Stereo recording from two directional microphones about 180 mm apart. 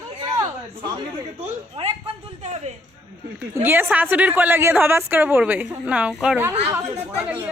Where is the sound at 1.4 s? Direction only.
35° right (ahead or behind).